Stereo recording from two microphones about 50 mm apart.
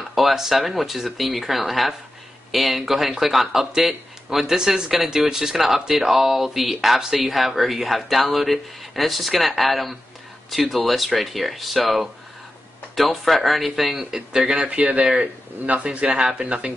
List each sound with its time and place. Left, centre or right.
0.1 s speech: centre
14.6 s speech: right